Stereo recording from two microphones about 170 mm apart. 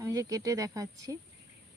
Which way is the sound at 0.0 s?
20° right (ahead or behind).